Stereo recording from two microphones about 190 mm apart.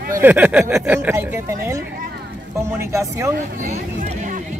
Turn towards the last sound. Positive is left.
turn(degrees=-15)  # may be behind; listen again after turning